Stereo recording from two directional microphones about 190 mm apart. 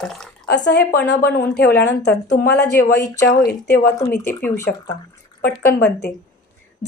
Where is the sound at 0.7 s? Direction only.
55° left (ahead or behind).